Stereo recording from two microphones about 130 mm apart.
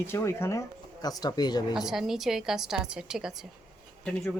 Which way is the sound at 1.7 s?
5° right (ahead or behind).